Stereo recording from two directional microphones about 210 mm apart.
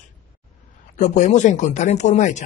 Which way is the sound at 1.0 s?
35° left (ahead or behind).